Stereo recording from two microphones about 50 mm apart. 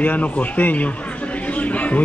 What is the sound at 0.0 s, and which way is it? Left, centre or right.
Speech, left.